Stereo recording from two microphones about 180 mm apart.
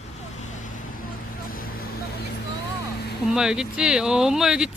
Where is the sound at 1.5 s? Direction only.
55° left (ahead or behind).